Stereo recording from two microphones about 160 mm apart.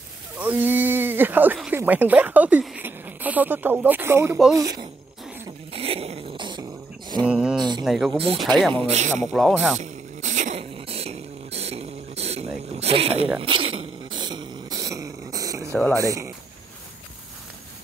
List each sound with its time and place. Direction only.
0.4 s speech: 10° right (ahead or behind)
5.7 s dog: 35° right (ahead or behind)
7.2 s a sound: 5° right (ahead or behind)
7.5 s a sound: 25° right (ahead or behind)
7.8 s speech: centre (ahead or behind)
8.8 s a man's voice: 45° right (ahead or behind)
9.2 s speech: centre (ahead or behind)
9.8 s a sound: 50° right (ahead or behind); by 15.7 s 20° right (ahead or behind)
15.9 s speech: 20° right (ahead or behind)